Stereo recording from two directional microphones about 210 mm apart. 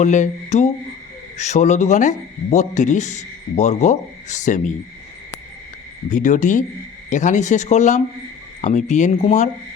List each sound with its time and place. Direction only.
0.0 s speech: 35° left (ahead or behind)
6.1 s speech: 35° left (ahead or behind)